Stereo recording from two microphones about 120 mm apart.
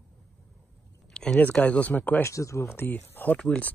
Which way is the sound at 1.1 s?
5° left (ahead or behind).